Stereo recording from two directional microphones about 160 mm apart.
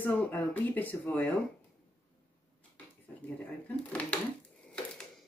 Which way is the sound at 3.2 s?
10° left (ahead or behind).